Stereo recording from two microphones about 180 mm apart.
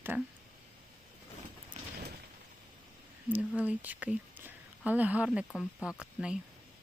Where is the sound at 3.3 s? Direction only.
10° right (ahead or behind).